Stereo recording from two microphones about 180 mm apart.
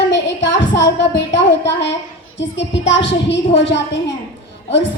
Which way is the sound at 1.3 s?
80° left.